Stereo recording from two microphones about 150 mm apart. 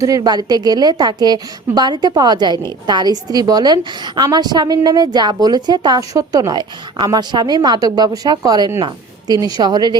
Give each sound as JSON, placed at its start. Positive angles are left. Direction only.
{"t": 0.0, "sound": "a woman's voice", "side_deg": -25}